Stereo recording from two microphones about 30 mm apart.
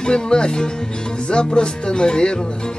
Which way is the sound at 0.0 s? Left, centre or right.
Left.